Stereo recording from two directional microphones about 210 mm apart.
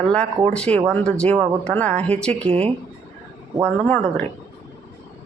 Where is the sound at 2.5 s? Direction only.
30° right (ahead or behind).